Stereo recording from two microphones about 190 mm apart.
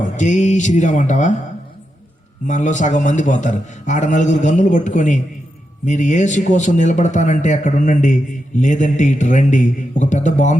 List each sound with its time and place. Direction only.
0.0 s speech: 40° left (ahead or behind)
2.5 s speech: 40° left (ahead or behind)